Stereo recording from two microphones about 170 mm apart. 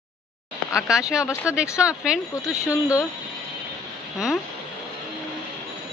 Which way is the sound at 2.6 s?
15° left (ahead or behind).